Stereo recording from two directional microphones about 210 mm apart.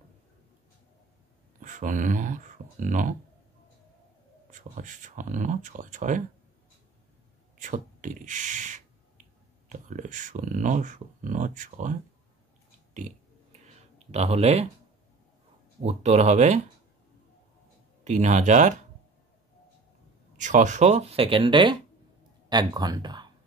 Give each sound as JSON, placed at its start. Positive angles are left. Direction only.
{"t": 1.6, "sound": "speech", "side_deg": -35}
{"t": 4.5, "sound": "speech", "side_deg": -40}
{"t": 7.5, "sound": "speech", "side_deg": -35}
{"t": 12.9, "sound": "clicking", "side_deg": -35}
{"t": 15.8, "sound": "speech", "side_deg": -30}
{"t": 18.0, "sound": "speech", "side_deg": -35}
{"t": 20.3, "sound": "speech", "side_deg": -35}